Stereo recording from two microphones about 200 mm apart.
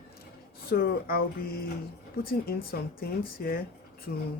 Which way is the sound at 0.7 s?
50° left (ahead or behind).